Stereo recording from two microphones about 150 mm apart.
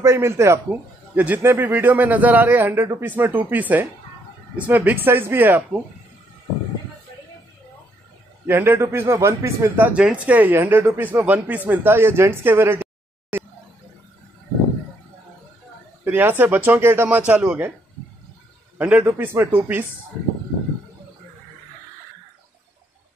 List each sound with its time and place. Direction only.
0.0 s a man's voice: 20° right (ahead or behind)
8.5 s a man's voice: 15° right (ahead or behind)
16.0 s a man's voice: 15° right (ahead or behind)
18.8 s a man's voice: 10° right (ahead or behind)